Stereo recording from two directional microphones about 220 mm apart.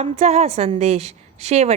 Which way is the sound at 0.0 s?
30° right (ahead or behind).